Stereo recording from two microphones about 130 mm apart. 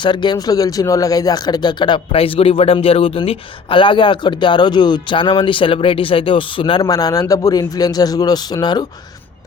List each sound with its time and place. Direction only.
0.0 s speech: 35° left (ahead or behind)
6.8 s speech: 25° left (ahead or behind)